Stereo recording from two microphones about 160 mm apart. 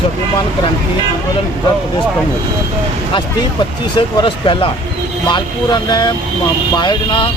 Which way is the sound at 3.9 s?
30° left (ahead or behind).